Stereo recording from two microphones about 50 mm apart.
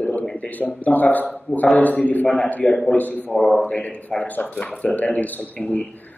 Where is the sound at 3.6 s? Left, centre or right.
Left.